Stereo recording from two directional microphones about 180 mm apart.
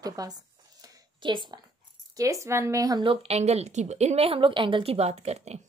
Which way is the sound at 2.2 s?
15° right (ahead or behind).